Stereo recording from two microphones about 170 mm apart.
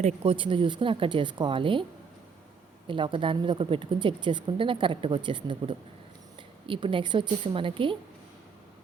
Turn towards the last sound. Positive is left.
turn(degrees=-30)  # may be behind; listen again after turning